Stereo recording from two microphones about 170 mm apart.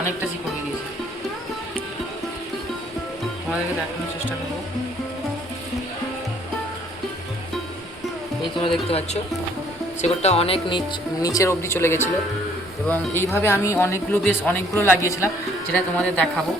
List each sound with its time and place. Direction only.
8.5 s speech: 30° left (ahead or behind); by 16.3 s 10° left (ahead or behind)